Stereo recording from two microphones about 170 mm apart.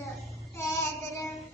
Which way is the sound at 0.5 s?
15° left (ahead or behind).